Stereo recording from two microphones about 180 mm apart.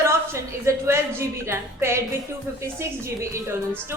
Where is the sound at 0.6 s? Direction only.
15° right (ahead or behind).